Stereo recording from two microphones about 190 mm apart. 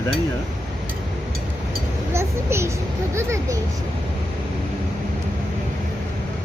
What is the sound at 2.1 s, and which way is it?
A child's voice, 15° right (ahead or behind).